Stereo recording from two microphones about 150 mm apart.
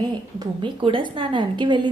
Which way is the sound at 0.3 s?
30° right (ahead or behind).